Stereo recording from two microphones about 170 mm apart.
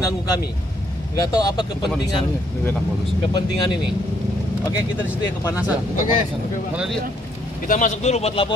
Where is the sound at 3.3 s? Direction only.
25° left (ahead or behind).